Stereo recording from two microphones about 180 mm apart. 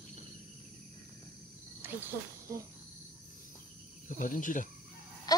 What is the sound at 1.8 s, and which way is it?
Cricket, 15° right (ahead or behind).